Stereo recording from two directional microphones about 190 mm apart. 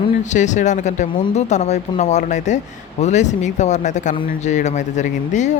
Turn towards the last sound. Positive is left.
turn(degrees=40)  # may be behind; listen again after turning